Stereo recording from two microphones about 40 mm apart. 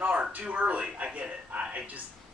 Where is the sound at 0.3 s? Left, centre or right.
Right.